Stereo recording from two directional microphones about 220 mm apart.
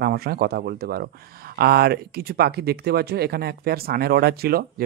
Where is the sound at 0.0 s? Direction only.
45° right (ahead or behind).